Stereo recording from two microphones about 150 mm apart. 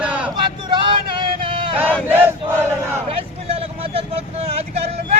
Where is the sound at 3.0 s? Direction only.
40° right (ahead or behind).